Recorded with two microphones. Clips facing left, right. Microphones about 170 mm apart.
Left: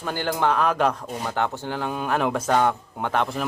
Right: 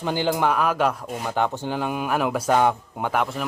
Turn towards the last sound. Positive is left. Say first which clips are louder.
# even
turn(degrees=-5)  # may be behind; listen again after turning